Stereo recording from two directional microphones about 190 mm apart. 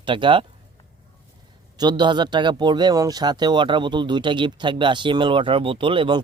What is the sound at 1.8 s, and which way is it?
Speech, 25° right (ahead or behind).